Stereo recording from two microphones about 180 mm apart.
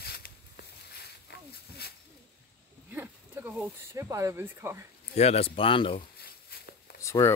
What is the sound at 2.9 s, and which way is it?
Speech, 10° right (ahead or behind).